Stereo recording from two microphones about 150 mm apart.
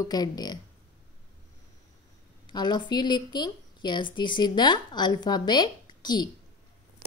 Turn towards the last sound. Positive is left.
turn(degrees=30)  # may be behind; listen again after turning